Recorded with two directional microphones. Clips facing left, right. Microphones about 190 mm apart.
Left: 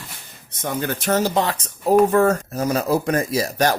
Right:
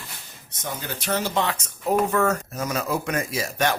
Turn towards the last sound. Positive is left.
turn(degrees=40)  # may be behind; listen again after turning